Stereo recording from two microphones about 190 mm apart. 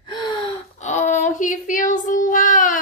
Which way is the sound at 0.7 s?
40° left (ahead or behind).